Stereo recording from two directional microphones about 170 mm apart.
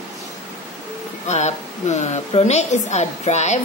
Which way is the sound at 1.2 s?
40° left (ahead or behind).